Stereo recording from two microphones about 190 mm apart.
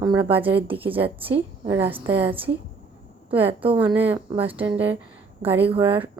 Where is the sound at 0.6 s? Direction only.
30° right (ahead or behind).